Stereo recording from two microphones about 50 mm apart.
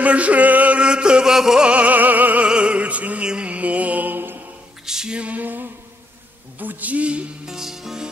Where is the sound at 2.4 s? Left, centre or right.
Right.